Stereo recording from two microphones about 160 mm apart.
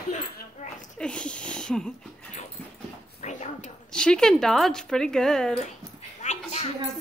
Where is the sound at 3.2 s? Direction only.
45° left (ahead or behind).